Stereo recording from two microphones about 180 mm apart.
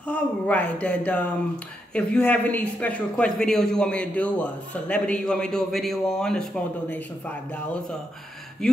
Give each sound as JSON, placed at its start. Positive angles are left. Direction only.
{"t": 0.0, "sound": "speech", "side_deg": 5}